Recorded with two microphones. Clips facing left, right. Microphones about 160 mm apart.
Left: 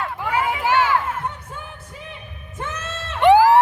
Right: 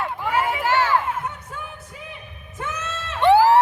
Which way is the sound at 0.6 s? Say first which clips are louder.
Left 4 dB; 15° left (ahead or behind).